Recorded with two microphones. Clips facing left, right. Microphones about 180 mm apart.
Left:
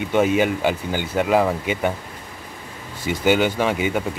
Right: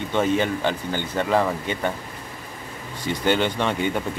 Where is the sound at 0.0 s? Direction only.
10° left (ahead or behind).